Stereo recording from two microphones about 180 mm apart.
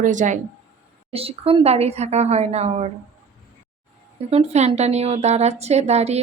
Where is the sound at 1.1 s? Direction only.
35° right (ahead or behind).